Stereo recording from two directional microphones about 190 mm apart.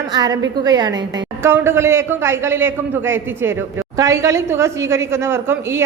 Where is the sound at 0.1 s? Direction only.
20° right (ahead or behind).